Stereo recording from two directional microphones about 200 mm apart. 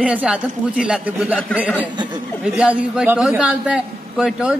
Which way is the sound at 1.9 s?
20° right (ahead or behind).